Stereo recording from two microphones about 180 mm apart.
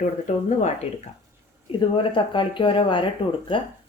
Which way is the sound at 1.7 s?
30° left (ahead or behind).